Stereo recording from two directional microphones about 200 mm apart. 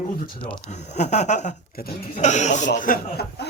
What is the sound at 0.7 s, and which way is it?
Speech, 35° left (ahead or behind).